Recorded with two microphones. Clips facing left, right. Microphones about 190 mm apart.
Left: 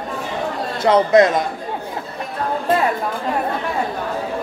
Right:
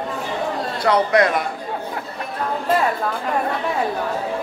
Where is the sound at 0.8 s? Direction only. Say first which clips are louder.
Left 4 dB; 25° left (ahead or behind).